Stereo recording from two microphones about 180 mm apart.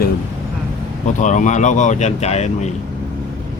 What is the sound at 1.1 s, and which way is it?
Speech, 45° left (ahead or behind).